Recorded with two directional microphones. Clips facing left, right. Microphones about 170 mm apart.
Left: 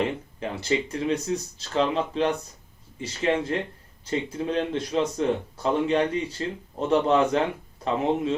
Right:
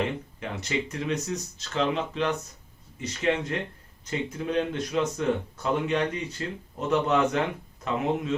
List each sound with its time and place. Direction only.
0.0 s speech: 30° left (ahead or behind)